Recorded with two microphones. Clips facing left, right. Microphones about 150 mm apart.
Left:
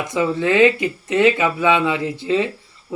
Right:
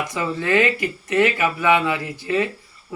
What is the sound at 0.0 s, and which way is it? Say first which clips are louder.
Speech: left 5 dB; 20° left (ahead or behind).